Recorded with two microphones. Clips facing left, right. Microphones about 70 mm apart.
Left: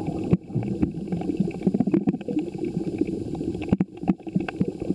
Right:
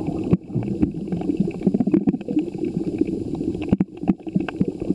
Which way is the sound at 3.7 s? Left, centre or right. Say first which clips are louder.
Right 2 dB; centre.